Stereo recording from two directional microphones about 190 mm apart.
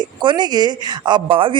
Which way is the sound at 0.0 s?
25° right (ahead or behind).